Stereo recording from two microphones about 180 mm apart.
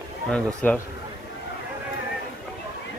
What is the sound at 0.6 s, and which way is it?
Speech, 10° left (ahead or behind).